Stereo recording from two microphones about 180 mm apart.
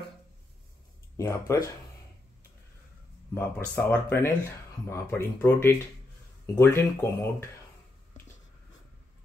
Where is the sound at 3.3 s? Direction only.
10° left (ahead or behind).